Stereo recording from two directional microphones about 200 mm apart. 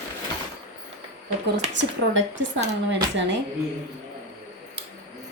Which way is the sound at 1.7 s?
70° right (ahead or behind).